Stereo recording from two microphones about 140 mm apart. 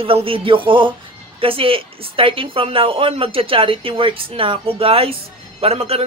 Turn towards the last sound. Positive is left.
turn(degrees=-45)  # may be behind; listen again after turning